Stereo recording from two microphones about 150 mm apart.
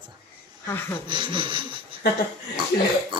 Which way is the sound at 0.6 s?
15° left (ahead or behind).